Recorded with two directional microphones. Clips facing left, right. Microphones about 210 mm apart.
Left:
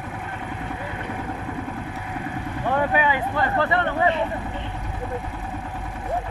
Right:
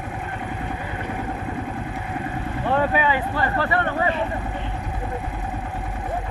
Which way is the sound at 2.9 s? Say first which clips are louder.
Even; 15° left (ahead or behind).